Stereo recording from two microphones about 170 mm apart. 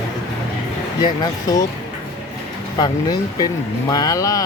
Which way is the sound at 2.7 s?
25° left (ahead or behind).